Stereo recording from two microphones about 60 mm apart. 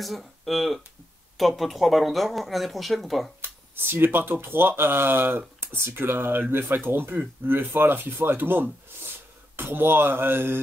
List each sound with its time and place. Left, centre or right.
0.0 s speech: centre
3.3 s speech: right